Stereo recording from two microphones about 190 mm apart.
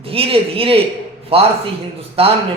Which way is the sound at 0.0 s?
30° right (ahead or behind).